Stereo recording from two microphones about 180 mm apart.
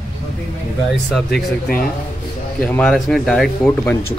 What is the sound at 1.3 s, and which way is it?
Speech, 55° left (ahead or behind).